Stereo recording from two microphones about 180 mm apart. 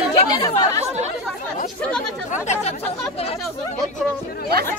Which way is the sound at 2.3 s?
40° left (ahead or behind).